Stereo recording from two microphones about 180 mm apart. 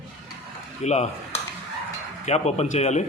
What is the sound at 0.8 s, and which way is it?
Speech, 40° left (ahead or behind).